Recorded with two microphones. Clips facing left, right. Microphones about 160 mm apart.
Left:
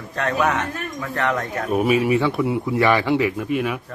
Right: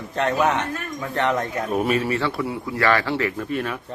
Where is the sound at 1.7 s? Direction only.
10° left (ahead or behind).